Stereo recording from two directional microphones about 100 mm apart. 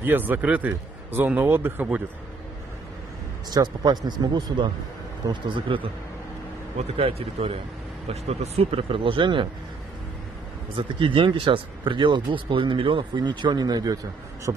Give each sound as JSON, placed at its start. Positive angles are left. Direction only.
{"t": 0.0, "sound": "a man's voice", "side_deg": -20}
{"t": 3.4, "sound": "a man's voice", "side_deg": -45}
{"t": 5.3, "sound": "speech", "side_deg": -60}
{"t": 6.8, "sound": "speech", "side_deg": -85}
{"t": 10.8, "sound": "speech", "side_deg": -60}